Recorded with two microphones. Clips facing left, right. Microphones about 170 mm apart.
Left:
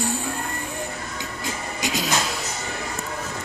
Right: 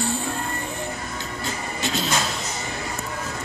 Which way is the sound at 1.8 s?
10° left (ahead or behind).